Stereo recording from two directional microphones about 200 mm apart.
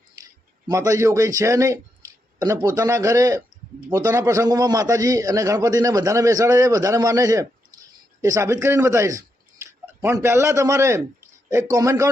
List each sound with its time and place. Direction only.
0.7 s a man's voice: 15° right (ahead or behind)